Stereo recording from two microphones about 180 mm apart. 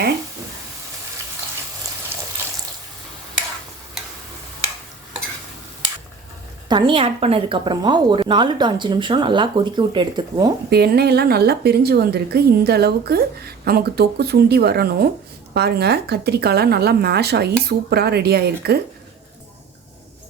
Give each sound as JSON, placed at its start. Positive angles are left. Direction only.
{"t": 6.7, "sound": "a woman's voice", "side_deg": -25}
{"t": 10.7, "sound": "a woman's voice", "side_deg": -60}